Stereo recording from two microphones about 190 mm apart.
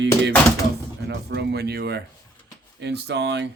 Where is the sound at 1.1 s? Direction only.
65° right (ahead or behind).